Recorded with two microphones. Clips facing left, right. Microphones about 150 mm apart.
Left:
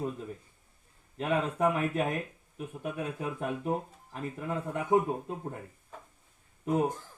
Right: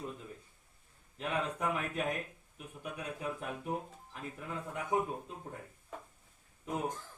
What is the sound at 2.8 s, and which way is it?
Speech, 45° left (ahead or behind).